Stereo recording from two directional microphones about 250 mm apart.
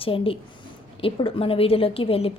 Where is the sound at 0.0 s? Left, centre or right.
Left.